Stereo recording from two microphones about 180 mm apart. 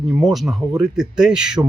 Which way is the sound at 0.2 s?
Centre (ahead or behind).